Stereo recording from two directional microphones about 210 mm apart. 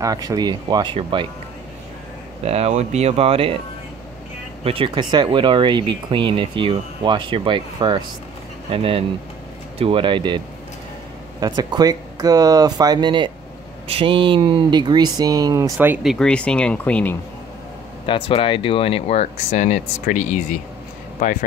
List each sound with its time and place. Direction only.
0.0 s speech: 15° right (ahead or behind)
2.4 s speech: 30° right (ahead or behind)
4.6 s speech: 25° right (ahead or behind); by 17.2 s 5° left (ahead or behind)
18.0 s speech: 25° left (ahead or behind)